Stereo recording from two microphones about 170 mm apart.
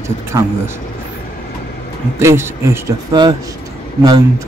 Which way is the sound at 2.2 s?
15° right (ahead or behind).